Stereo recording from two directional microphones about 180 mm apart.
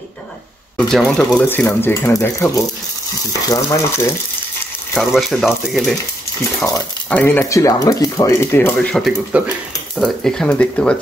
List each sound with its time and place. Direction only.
0.7 s speech: centre (ahead or behind)
4.9 s speech: centre (ahead or behind)
7.1 s speech: 10° left (ahead or behind)
8.9 s speech: centre (ahead or behind)